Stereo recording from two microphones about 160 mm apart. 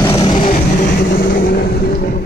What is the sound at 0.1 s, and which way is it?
Music, 30° left (ahead or behind).